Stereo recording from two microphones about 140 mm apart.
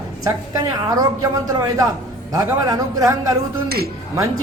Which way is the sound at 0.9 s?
25° right (ahead or behind).